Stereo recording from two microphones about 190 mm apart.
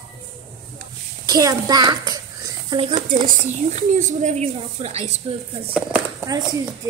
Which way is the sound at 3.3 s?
40° right (ahead or behind).